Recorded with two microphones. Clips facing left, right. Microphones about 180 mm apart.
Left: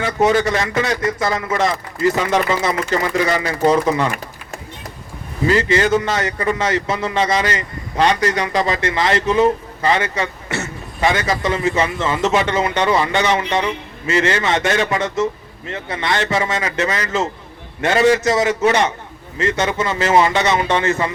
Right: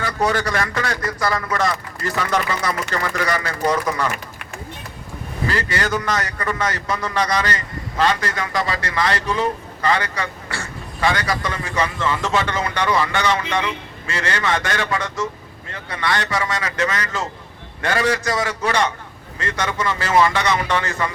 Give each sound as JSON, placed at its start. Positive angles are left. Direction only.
{"t": 0.0, "sound": "a man's voice", "side_deg": 20}
{"t": 5.5, "sound": "a man's voice", "side_deg": 20}